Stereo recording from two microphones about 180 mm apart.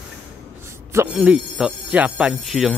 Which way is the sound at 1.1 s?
5° right (ahead or behind).